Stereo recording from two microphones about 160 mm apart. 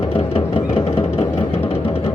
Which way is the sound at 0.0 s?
40° left (ahead or behind).